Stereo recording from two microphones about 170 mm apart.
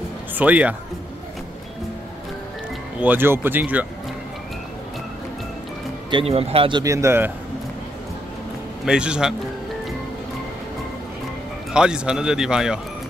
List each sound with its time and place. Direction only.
0.4 s speech: 10° right (ahead or behind)
3.0 s speech: 10° right (ahead or behind)
6.0 s speech: 30° right (ahead or behind)
6.8 s speech: 15° right (ahead or behind)
8.8 s speech: 5° right (ahead or behind)
11.7 s speech: 5° right (ahead or behind)